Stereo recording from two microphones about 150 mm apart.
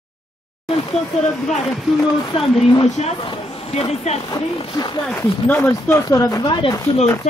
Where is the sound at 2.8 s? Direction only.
45° left (ahead or behind).